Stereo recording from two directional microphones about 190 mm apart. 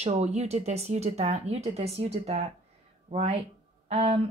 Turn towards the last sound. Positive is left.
turn(degrees=-35)  # may be behind; listen again after turning